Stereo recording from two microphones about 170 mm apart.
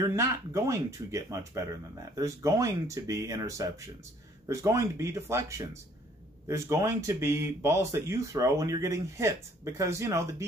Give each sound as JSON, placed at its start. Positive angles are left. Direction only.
{"t": 0.1, "sound": "speech", "side_deg": -15}